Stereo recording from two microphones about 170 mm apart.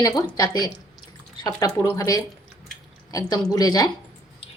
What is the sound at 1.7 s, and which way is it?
Speech, 20° left (ahead or behind).